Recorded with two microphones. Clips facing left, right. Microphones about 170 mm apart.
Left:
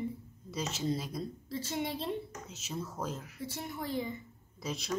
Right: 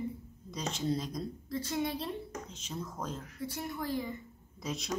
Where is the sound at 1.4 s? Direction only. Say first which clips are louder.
Right 3 dB; 25° left (ahead or behind).